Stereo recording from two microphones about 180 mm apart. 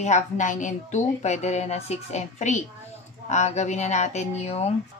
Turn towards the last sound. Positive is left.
turn(degrees=35)  # may be behind; listen again after turning